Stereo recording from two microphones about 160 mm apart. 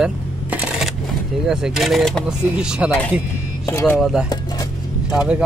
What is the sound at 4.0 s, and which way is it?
Speech, 5° right (ahead or behind).